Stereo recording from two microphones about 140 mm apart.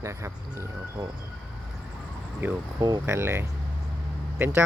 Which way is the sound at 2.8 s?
30° right (ahead or behind).